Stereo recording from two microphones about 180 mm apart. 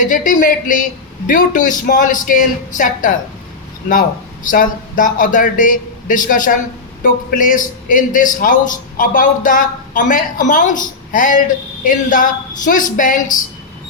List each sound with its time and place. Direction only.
0.0 s speech: 45° left (ahead or behind)
4.4 s speech: 45° left (ahead or behind)